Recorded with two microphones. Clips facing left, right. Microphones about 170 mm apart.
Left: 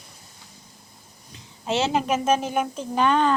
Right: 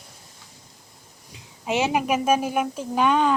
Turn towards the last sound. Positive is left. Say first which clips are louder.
# even
turn(degrees=-10)  # may be behind; listen again after turning